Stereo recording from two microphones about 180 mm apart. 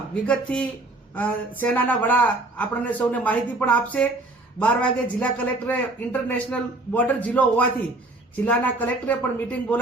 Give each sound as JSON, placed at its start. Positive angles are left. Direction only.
{"t": 0.1, "sound": "speech", "side_deg": 5}